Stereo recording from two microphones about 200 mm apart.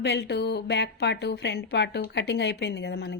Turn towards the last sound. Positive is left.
turn(degrees=55)  # may be behind; listen again after turning